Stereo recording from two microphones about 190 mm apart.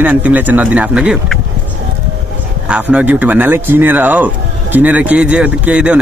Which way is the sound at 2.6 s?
5° right (ahead or behind).